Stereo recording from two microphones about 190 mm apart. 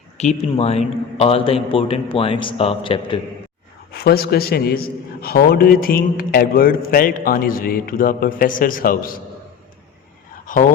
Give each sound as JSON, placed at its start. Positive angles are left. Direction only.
{"t": 0.2, "sound": "a man's voice", "side_deg": 35}
{"t": 3.9, "sound": "a man's voice", "side_deg": 55}
{"t": 10.4, "sound": "a sound", "side_deg": 45}